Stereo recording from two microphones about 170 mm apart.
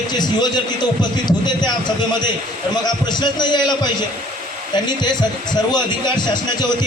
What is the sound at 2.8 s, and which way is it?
Speech, 25° left (ahead or behind).